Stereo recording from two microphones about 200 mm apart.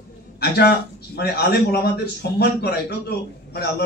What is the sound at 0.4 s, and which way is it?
A man's voice, 50° left (ahead or behind).